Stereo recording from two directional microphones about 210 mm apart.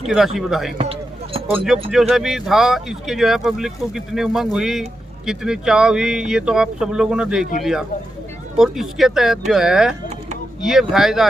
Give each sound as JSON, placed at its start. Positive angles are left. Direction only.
{"t": 0.3, "sound": "speech", "side_deg": 0}
{"t": 0.8, "sound": "basketball bounce", "side_deg": -25}
{"t": 1.5, "sound": "speech", "side_deg": 0}